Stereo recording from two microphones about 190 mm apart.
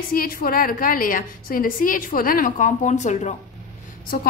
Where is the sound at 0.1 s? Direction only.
50° left (ahead or behind).